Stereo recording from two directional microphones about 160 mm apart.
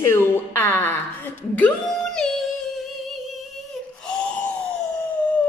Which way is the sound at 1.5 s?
5° left (ahead or behind).